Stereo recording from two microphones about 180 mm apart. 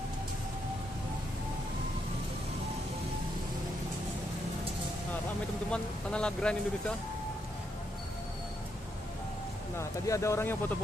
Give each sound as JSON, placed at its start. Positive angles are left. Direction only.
{"t": 5.7, "sound": "speech", "side_deg": 5}
{"t": 9.8, "sound": "speech", "side_deg": 15}